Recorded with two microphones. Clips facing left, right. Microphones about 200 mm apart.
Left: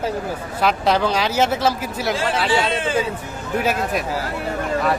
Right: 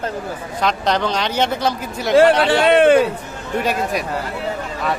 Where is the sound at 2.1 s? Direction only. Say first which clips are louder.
Right 9 dB; 65° right (ahead or behind).